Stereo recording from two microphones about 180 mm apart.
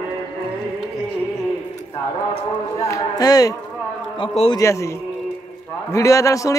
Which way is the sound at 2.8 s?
15° left (ahead or behind).